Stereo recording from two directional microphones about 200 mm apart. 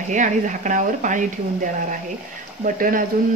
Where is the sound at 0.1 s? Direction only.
40° right (ahead or behind).